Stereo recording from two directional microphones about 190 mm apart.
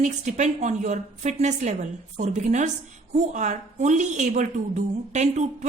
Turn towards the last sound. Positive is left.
turn(degrees=-40)  # may be behind; listen again after turning